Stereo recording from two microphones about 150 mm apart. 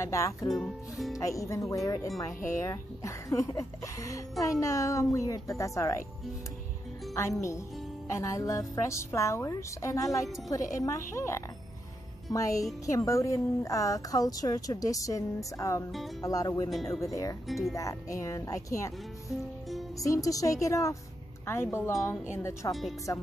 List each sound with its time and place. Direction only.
0.0 s speech: 20° left (ahead or behind)
0.5 s speech: centre (ahead or behind)
1.1 s speech: 20° left (ahead or behind)
8.1 s speech: 20° left (ahead or behind)
22.7 s speech: centre (ahead or behind)